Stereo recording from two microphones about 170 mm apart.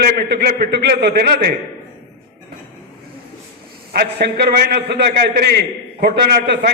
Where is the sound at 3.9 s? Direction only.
70° right (ahead or behind).